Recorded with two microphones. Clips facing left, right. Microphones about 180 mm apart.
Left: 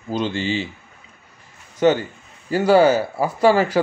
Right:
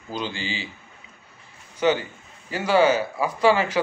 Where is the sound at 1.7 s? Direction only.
40° left (ahead or behind).